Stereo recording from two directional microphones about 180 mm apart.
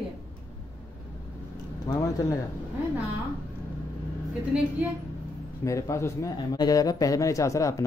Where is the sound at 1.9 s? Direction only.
20° left (ahead or behind).